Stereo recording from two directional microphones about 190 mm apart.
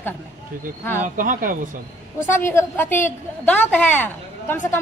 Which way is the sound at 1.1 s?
45° right (ahead or behind).